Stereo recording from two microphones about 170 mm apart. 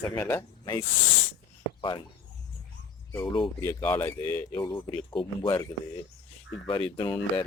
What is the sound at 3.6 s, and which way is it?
Speech, 15° left (ahead or behind).